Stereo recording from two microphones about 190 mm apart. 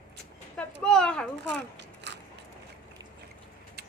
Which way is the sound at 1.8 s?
65° right (ahead or behind).